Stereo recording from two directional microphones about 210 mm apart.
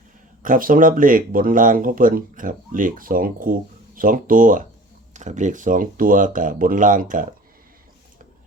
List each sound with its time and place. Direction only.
0.4 s speech: 40° right (ahead or behind)